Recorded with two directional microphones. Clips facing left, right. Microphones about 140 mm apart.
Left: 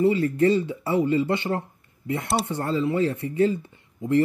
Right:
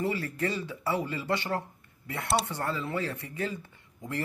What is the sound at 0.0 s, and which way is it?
Speech, 20° left (ahead or behind).